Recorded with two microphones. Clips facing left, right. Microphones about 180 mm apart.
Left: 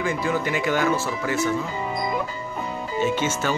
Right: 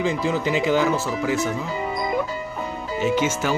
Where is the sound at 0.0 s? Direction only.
20° right (ahead or behind).